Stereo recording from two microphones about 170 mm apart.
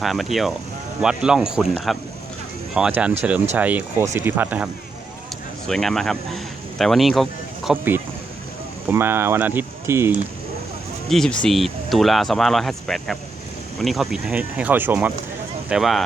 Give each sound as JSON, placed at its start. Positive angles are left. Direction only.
{"t": 0.0, "sound": "speech", "side_deg": 0}
{"t": 5.6, "sound": "speech", "side_deg": 0}
{"t": 11.1, "sound": "speech", "side_deg": 0}